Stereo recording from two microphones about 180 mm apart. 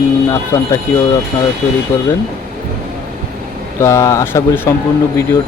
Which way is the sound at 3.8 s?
15° left (ahead or behind).